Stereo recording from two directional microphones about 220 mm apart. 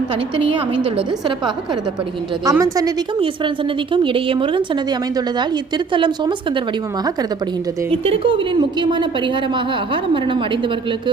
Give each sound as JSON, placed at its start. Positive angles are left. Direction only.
{"t": 2.4, "sound": "a woman's voice", "side_deg": -15}
{"t": 7.9, "sound": "a woman's voice", "side_deg": -25}